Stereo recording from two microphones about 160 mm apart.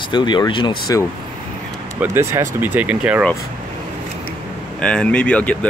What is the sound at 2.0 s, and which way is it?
Speech, 15° right (ahead or behind).